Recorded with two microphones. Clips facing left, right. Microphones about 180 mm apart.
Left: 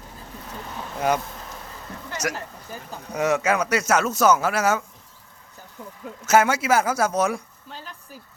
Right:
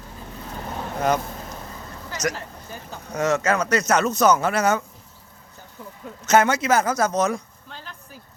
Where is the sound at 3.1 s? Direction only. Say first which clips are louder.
Even; 10° left (ahead or behind).